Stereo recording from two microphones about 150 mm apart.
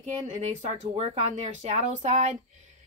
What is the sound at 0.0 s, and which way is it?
Speech, 50° right (ahead or behind).